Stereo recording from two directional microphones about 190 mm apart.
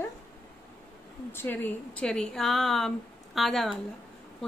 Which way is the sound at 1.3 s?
10° left (ahead or behind).